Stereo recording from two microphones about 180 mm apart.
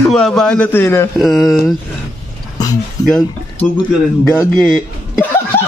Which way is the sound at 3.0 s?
5° left (ahead or behind).